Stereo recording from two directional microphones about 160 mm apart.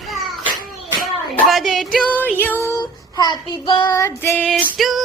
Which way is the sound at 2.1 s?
10° left (ahead or behind).